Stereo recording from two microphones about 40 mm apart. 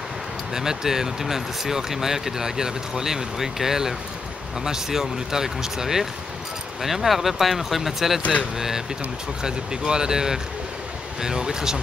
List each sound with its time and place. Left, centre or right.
0.6 s speech: centre